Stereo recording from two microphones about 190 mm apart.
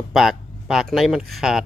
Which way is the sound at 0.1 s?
Centre (ahead or behind).